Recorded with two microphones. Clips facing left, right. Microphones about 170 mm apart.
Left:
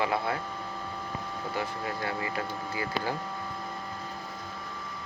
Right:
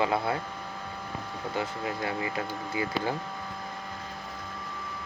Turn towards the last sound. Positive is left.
turn(degrees=-20)  # may be behind; listen again after turning